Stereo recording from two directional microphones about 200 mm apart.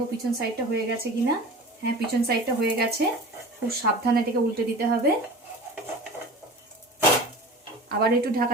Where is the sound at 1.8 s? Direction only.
50° right (ahead or behind).